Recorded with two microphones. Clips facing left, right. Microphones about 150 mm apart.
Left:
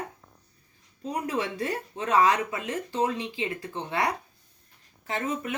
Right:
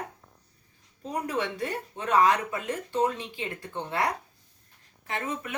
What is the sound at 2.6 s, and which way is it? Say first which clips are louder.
Speech: right 2 dB; 20° left (ahead or behind).